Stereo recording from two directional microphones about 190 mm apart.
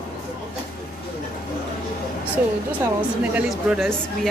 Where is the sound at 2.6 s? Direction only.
10° right (ahead or behind).